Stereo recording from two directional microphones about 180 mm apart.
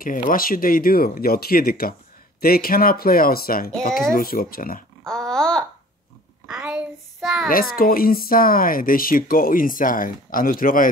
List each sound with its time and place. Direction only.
0.0 s speech: 50° left (ahead or behind)
5.0 s babbling: 5° left (ahead or behind)
6.4 s a sound: 5° right (ahead or behind)
7.4 s speech: 55° left (ahead or behind)